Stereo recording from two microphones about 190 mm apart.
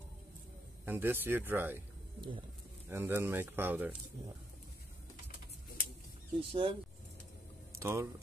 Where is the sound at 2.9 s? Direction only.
10° right (ahead or behind).